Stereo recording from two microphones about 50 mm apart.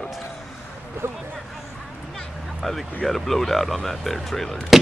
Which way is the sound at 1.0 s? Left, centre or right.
Right.